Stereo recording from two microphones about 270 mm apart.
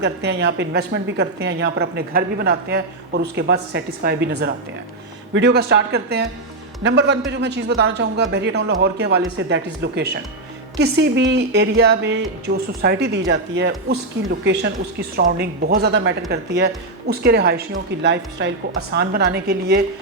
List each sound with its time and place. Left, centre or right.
0.0 s a woman's voice: right